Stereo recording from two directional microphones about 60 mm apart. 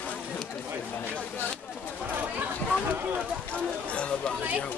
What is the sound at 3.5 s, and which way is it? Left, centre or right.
Speech, centre.